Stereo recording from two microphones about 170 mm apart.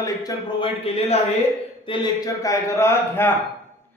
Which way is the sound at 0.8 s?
35° left (ahead or behind).